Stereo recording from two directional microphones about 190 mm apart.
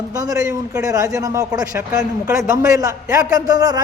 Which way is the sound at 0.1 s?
20° right (ahead or behind).